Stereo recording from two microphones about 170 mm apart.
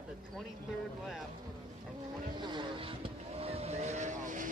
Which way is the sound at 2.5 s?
35° right (ahead or behind).